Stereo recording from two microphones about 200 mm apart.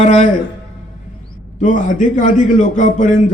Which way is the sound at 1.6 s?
40° left (ahead or behind).